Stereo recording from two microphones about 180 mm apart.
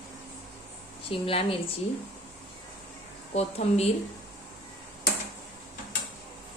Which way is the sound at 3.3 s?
35° left (ahead or behind).